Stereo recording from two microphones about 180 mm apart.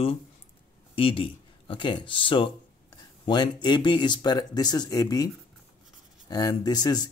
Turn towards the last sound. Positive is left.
turn(degrees=25)  # may be behind; listen again after turning